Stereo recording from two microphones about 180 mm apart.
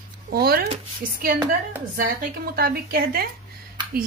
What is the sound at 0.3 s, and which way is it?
Speech, 55° right (ahead or behind).